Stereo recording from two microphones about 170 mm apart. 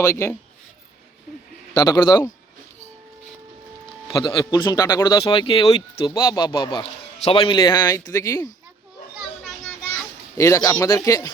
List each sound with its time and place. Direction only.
0.0 s speech: 15° left (ahead or behind)
1.7 s speech: 25° left (ahead or behind)
4.2 s speech: 25° left (ahead or behind)
5.2 s speech: 30° left (ahead or behind)
10.3 s speech: 15° left (ahead or behind)